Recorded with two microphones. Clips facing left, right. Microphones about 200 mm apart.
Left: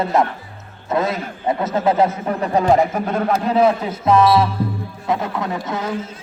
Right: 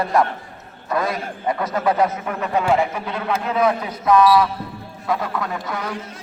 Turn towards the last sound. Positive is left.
turn(degrees=20)  # may be behind; listen again after turning